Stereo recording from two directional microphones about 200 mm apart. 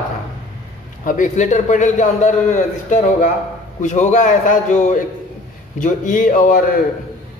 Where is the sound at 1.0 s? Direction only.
40° left (ahead or behind).